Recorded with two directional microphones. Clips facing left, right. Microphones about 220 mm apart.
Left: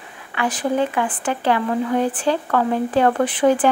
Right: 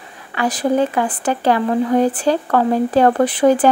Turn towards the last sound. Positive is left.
turn(degrees=-40)  # may be behind; listen again after turning